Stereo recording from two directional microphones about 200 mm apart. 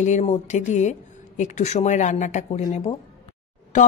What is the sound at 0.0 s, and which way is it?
Speech, 35° left (ahead or behind).